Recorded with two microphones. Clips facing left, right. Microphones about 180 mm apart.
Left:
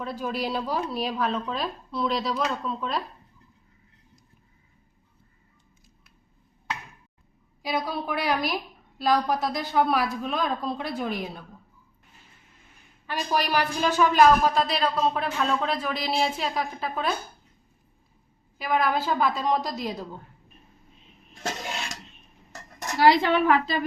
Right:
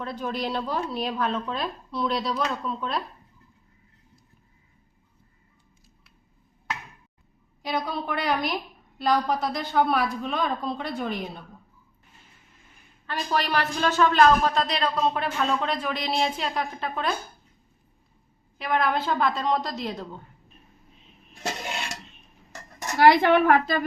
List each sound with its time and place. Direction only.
0.0 s a man's voice: 5° left (ahead or behind)
7.6 s a man's voice: 5° left (ahead or behind)
13.1 s a man's voice: 10° left (ahead or behind)
18.5 s a man's voice: 5° left (ahead or behind)
21.3 s dishes: 5° right (ahead or behind)
23.0 s a woman's voice: 55° right (ahead or behind)